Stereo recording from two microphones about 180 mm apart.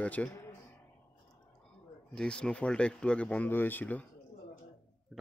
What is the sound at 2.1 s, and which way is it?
Speech, 5° left (ahead or behind).